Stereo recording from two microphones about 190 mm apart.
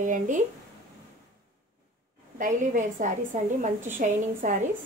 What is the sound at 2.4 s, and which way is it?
A woman's voice, 40° right (ahead or behind).